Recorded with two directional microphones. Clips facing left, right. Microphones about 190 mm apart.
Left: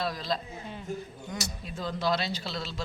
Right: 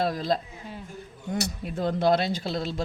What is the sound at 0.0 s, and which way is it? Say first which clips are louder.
Speech: right 6 dB; 50° right (ahead or behind).